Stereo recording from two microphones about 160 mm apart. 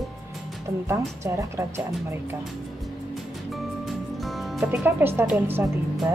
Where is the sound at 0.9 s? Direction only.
20° right (ahead or behind).